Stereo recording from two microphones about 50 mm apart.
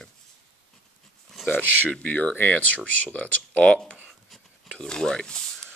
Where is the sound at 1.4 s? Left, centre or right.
Left.